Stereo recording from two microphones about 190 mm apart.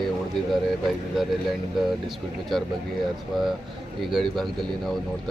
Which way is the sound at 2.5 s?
Centre (ahead or behind).